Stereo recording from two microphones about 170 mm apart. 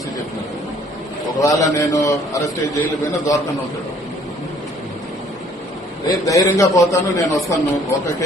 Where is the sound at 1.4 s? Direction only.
20° left (ahead or behind).